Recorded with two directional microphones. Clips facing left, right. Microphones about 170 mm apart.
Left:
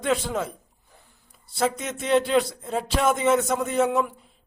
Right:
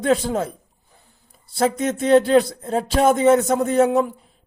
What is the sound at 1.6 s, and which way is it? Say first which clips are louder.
Speech: right 6 dB; 40° right (ahead or behind).